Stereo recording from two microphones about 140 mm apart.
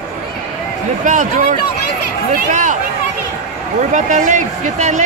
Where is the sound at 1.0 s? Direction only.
65° right (ahead or behind).